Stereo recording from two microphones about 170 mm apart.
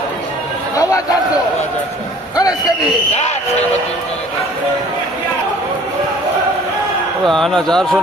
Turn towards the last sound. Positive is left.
turn(degrees=0)  # may be behind; listen again after turning